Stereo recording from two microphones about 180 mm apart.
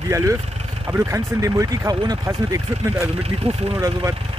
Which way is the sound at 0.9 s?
15° right (ahead or behind).